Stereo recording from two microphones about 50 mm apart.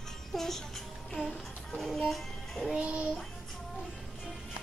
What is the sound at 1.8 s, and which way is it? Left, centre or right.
Music, centre.